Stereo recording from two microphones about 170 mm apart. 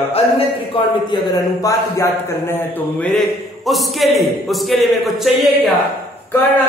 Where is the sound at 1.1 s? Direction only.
20° left (ahead or behind).